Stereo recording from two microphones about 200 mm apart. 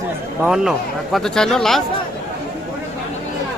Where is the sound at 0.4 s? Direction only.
Centre (ahead or behind).